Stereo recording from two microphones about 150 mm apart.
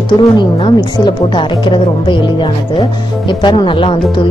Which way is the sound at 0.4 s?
35° left (ahead or behind).